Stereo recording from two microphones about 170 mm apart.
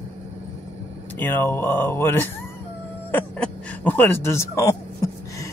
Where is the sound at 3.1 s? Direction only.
10° left (ahead or behind).